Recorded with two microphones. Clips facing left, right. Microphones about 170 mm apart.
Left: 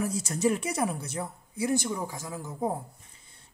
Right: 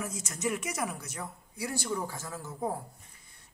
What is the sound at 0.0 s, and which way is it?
Speech, 35° left (ahead or behind).